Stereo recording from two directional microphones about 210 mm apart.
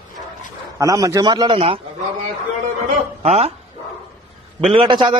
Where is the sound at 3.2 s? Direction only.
30° right (ahead or behind).